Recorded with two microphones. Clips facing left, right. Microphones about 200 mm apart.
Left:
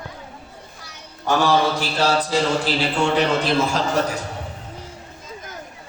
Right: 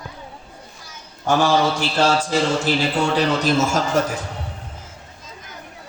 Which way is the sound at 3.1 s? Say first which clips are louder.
Right 1 dB; 40° right (ahead or behind).